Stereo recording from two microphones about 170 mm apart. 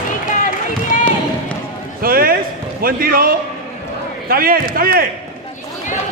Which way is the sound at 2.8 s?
60° right (ahead or behind).